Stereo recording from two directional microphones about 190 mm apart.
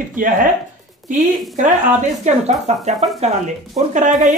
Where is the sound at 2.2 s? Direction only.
40° right (ahead or behind).